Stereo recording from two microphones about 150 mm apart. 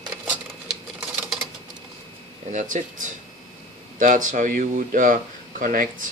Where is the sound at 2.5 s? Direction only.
60° right (ahead or behind).